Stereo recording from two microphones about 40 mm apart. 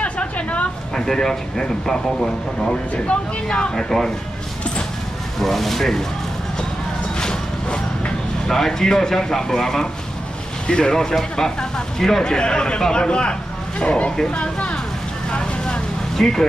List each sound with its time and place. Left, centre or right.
0.0 s a sound: left
0.9 s speech: centre
5.4 s speech: centre
7.2 s a sound: centre
8.5 s speech: centre; by 14.8 s left
15.6 s vehicle: centre